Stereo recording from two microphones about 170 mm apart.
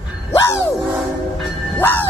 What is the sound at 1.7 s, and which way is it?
Music, 10° left (ahead or behind).